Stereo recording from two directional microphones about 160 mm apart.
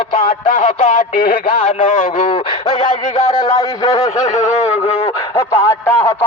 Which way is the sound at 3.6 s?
25° left (ahead or behind).